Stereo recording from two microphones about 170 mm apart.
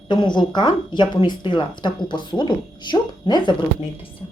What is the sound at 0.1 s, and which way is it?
A woman's voice, 25° left (ahead or behind).